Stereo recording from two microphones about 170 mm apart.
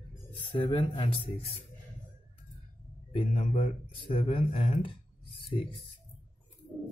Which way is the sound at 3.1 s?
35° left (ahead or behind).